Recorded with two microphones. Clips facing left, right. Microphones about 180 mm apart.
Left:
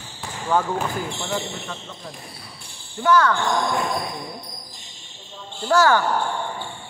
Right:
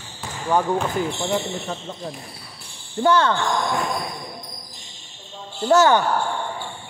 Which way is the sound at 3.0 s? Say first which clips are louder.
Even; 30° right (ahead or behind).